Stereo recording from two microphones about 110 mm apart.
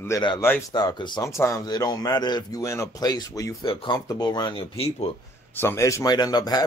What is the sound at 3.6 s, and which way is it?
Speech, 50° left (ahead or behind).